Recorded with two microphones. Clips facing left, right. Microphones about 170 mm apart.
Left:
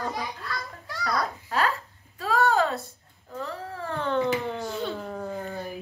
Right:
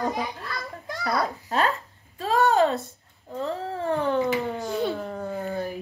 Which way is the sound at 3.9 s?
10° right (ahead or behind).